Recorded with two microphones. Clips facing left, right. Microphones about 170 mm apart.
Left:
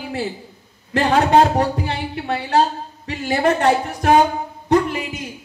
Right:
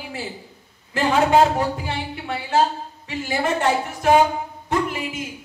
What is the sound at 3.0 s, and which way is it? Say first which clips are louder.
Speech: left 5 dB; 40° left (ahead or behind).